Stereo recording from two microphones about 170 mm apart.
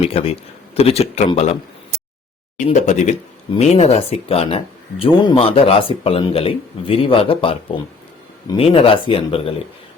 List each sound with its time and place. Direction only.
0.0 s speech: 35° left (ahead or behind)
2.6 s speech: 45° left (ahead or behind)